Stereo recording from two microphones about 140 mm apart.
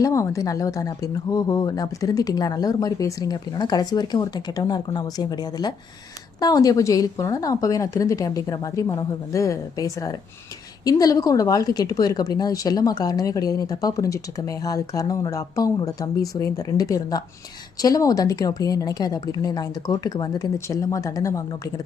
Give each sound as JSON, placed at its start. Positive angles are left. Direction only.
{"t": 0.0, "sound": "speech", "side_deg": 25}